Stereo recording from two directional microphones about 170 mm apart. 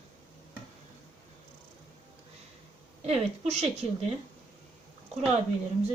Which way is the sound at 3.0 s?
40° right (ahead or behind).